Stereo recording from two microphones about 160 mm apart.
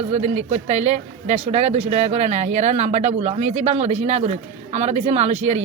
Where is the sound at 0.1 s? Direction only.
40° right (ahead or behind).